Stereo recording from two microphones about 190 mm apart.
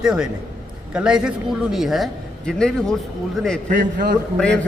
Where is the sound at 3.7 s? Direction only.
45° right (ahead or behind).